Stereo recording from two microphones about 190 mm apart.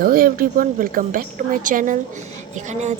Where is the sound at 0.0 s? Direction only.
50° right (ahead or behind).